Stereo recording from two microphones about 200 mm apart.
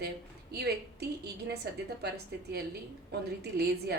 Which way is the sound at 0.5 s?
55° right (ahead or behind).